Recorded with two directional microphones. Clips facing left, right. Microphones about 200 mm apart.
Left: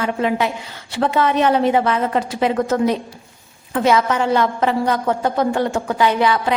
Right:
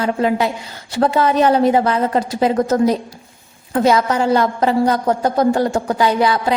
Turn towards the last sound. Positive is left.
turn(degrees=-40)  # may be behind; listen again after turning